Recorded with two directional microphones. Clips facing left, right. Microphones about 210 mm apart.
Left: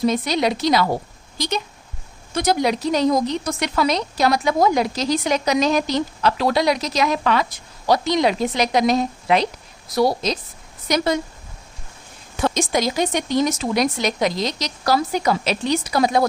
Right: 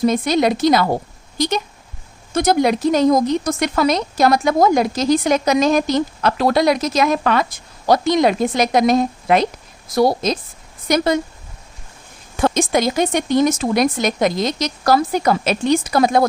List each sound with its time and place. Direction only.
0.0 s a woman's voice: 50° right (ahead or behind)
12.4 s a woman's voice: 55° right (ahead or behind)